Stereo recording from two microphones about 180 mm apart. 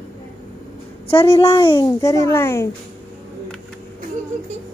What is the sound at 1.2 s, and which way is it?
A woman's voice, 15° left (ahead or behind).